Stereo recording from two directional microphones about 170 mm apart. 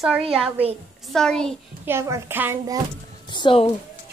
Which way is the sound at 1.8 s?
15° right (ahead or behind).